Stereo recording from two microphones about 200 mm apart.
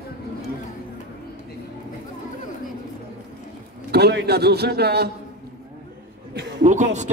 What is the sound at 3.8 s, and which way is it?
A man's voice, 55° right (ahead or behind).